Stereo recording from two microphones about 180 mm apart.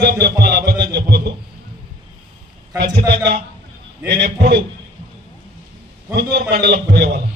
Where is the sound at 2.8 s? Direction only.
65° right (ahead or behind).